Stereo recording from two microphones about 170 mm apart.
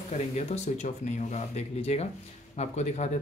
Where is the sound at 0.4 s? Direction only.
40° left (ahead or behind).